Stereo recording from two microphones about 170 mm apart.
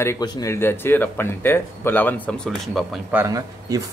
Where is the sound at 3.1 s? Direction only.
15° right (ahead or behind).